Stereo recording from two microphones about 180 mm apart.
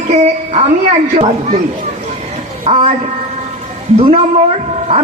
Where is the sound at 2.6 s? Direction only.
35° right (ahead or behind).